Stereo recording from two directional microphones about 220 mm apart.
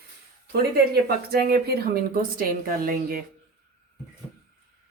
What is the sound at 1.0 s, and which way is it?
A woman's voice, 45° right (ahead or behind).